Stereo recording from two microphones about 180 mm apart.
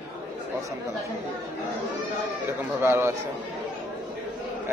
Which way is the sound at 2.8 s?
15° right (ahead or behind).